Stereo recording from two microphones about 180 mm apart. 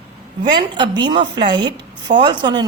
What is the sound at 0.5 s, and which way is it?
A woman's voice, 25° right (ahead or behind).